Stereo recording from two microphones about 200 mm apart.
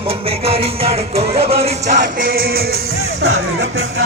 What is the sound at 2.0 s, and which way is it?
Music, 50° right (ahead or behind).